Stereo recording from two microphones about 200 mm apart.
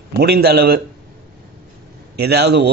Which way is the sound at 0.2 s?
55° right (ahead or behind).